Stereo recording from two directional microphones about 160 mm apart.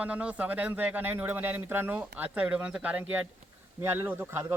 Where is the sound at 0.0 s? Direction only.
10° right (ahead or behind).